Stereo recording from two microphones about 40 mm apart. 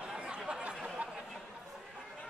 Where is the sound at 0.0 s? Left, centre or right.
Centre.